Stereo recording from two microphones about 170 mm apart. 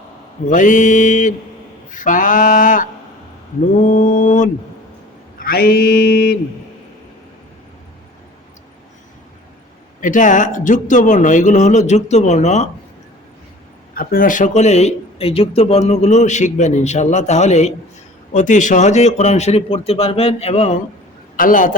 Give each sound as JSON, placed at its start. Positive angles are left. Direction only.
{"t": 0.4, "sound": "speech", "side_deg": 50}
{"t": 3.6, "sound": "mantra", "side_deg": 50}
{"t": 5.4, "sound": "mantra", "side_deg": 60}
{"t": 10.0, "sound": "speech", "side_deg": 50}
{"t": 13.9, "sound": "speech", "side_deg": 60}
{"t": 21.3, "sound": "speech", "side_deg": 55}